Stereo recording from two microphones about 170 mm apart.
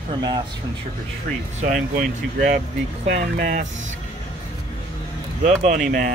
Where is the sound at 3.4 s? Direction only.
45° right (ahead or behind).